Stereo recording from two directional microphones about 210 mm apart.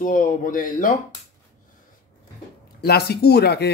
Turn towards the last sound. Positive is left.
turn(degrees=50)  # may be behind; listen again after turning